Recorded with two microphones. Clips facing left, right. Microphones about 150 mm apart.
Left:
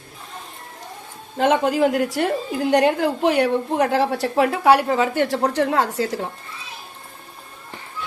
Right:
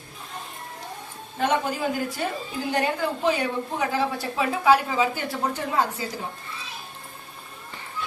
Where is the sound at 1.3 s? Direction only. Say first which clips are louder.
Left 6 dB; 90° left.